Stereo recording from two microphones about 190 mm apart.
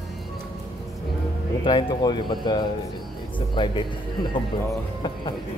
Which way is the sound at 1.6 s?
25° left (ahead or behind).